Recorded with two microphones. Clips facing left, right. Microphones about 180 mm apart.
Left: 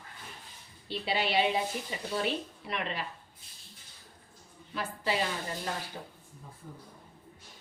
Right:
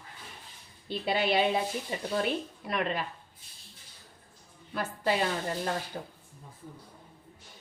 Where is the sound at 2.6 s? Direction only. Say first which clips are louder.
Right 7 dB; 50° right (ahead or behind).